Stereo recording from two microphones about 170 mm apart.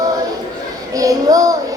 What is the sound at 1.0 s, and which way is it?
Child singing, 20° right (ahead or behind).